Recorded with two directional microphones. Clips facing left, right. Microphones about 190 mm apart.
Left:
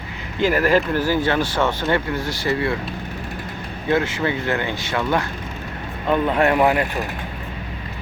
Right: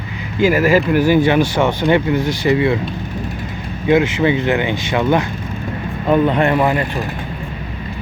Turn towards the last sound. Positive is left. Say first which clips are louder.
# right 2 dB
turn(degrees=10)  # may be behind; listen again after turning